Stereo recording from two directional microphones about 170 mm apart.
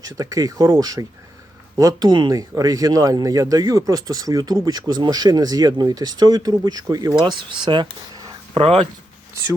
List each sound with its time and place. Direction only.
0.0 s speech: 20° right (ahead or behind); by 8.9 s 35° right (ahead or behind)